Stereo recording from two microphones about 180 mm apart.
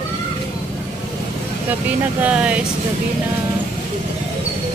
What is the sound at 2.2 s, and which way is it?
Speech, 5° right (ahead or behind).